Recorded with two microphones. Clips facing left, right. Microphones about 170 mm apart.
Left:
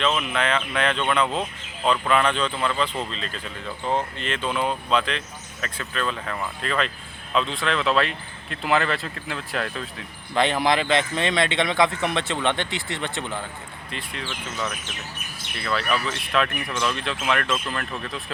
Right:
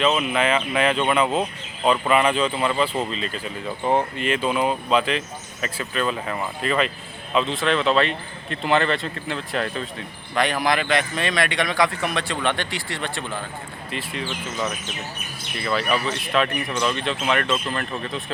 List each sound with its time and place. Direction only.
0.0 s speech: 10° right (ahead or behind)
10.3 s speech: 25° left (ahead or behind)
13.9 s speech: 5° right (ahead or behind)